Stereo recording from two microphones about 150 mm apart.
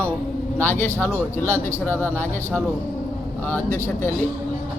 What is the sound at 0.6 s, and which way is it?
Speech, 15° left (ahead or behind).